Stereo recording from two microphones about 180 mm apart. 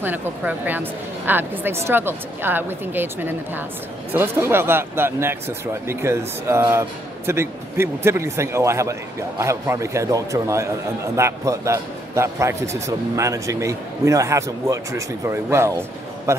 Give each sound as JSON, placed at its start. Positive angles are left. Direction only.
{"t": 0.0, "sound": "speech", "side_deg": -10}